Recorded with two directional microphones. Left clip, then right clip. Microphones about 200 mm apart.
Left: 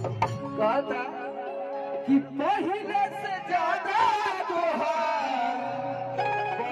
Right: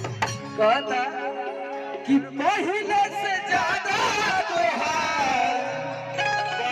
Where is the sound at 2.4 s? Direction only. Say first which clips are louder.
Right 4 dB; 35° left (ahead or behind).